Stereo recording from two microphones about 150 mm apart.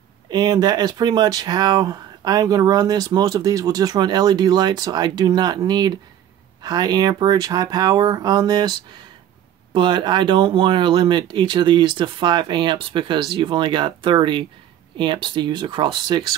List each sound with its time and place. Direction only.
0.3 s speech: 25° right (ahead or behind)